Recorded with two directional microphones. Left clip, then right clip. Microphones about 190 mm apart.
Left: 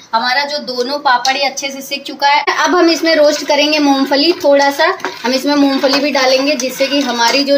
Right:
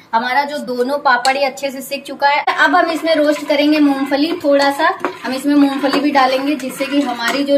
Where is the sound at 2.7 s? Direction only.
45° left (ahead or behind).